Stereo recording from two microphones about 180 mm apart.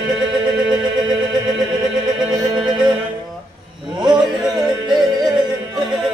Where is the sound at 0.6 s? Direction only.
5° right (ahead or behind).